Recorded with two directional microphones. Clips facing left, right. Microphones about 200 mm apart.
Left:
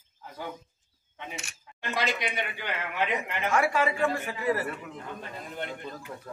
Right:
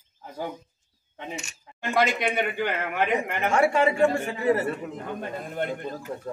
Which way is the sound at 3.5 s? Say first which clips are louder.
Right 4 dB; 30° right (ahead or behind).